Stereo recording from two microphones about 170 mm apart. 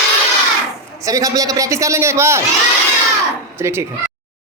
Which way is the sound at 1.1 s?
20° right (ahead or behind).